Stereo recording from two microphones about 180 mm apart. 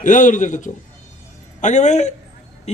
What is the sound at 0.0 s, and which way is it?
A man's voice, 45° left (ahead or behind).